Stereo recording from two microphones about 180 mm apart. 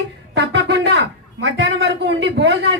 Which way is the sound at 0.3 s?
75° right (ahead or behind).